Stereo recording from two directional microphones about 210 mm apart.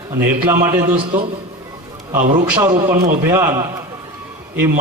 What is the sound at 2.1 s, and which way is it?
A man's voice, 15° right (ahead or behind).